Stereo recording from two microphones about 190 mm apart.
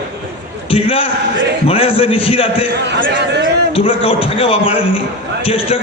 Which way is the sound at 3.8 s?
30° left (ahead or behind).